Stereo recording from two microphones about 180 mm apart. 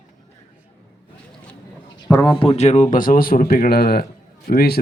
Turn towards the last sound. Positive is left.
turn(degrees=60)  # may be behind; listen again after turning